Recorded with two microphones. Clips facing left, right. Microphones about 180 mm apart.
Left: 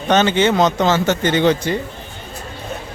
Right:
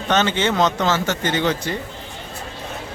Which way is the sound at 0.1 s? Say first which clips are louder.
Left 5 dB; 15° left (ahead or behind).